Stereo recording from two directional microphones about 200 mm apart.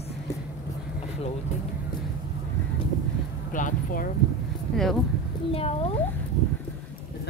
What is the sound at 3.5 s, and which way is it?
Speech, 40° left (ahead or behind).